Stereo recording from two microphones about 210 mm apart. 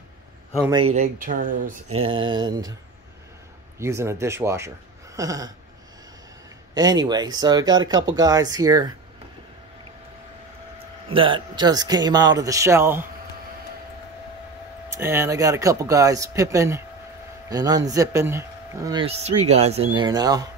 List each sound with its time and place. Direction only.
0.9 s speech: 35° right (ahead or behind)
2.0 s speech: 25° right (ahead or behind)
3.8 s speech: 15° right (ahead or behind)
6.7 s speech: 20° right (ahead or behind)
11.1 s speech: 25° right (ahead or behind)
15.0 s speech: 10° right (ahead or behind)
19.0 s speech: 30° right (ahead or behind)